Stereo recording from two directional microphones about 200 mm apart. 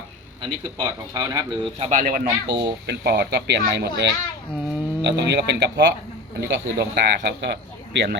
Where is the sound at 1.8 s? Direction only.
40° right (ahead or behind); by 5.9 s 60° right (ahead or behind).